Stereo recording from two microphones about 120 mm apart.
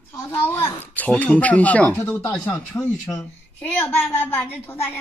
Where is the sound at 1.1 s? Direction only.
10° left (ahead or behind).